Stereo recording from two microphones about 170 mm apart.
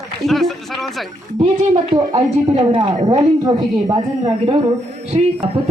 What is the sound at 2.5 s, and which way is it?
A woman's voice, 30° right (ahead or behind).